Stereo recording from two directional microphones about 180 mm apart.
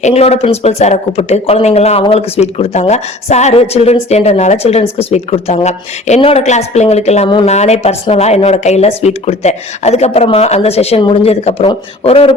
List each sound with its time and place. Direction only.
0.0 s speech: 35° left (ahead or behind)